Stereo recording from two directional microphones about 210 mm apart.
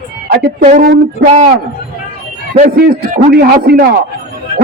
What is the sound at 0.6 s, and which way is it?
Speech, 30° right (ahead or behind).